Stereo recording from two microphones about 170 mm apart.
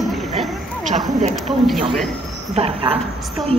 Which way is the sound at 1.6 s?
Centre (ahead or behind).